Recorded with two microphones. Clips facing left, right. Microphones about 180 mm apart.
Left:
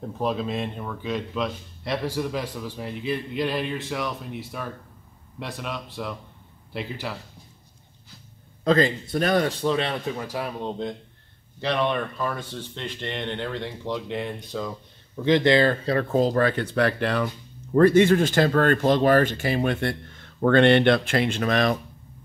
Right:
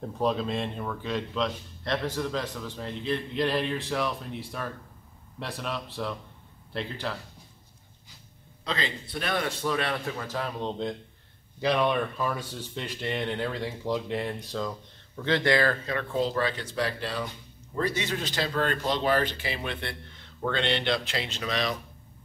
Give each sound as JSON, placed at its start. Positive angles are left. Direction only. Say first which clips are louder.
{"t": 0.2, "sound": "a man's voice", "louder": "left 1 dB", "side_deg": 5}
{"t": 8.6, "sound": "a man's voice", "louder": "left 12 dB", "side_deg": 50}
{"t": 10.2, "sound": "speech", "louder": "left 2 dB", "side_deg": 10}
{"t": 11.6, "sound": "a man's voice", "louder": "even", "side_deg": -10}
{"t": 15.2, "sound": "speech", "louder": "left 6 dB", "side_deg": 20}
{"t": 17.7, "sound": "speech", "louder": "left 14 dB", "side_deg": 55}